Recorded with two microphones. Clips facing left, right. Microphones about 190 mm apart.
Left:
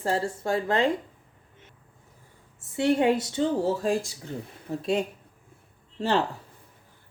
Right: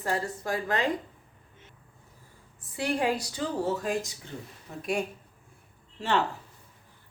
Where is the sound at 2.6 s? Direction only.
25° left (ahead or behind).